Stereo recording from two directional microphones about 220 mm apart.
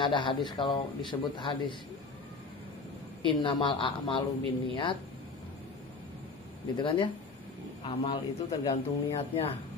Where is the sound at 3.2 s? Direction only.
20° left (ahead or behind).